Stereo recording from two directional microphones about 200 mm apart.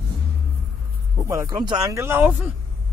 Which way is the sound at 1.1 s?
15° right (ahead or behind).